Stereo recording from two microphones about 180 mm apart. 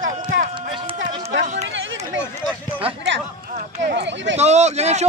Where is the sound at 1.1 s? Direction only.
40° right (ahead or behind).